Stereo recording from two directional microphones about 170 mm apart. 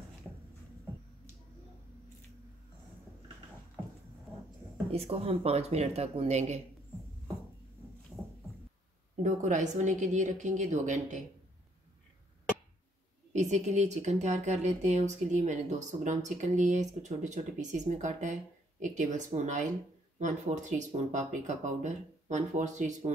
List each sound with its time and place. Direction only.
4.9 s speech: 35° right (ahead or behind)
9.2 s speech: 45° right (ahead or behind)
13.3 s speech: 45° right (ahead or behind)